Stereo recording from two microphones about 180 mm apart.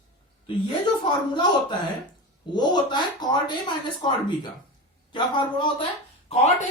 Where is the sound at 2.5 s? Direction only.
25° left (ahead or behind).